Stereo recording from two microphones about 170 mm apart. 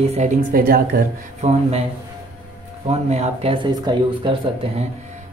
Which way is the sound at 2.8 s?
40° right (ahead or behind).